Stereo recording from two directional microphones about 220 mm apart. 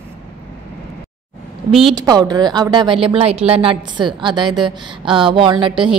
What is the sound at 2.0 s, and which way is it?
Speech, 20° right (ahead or behind).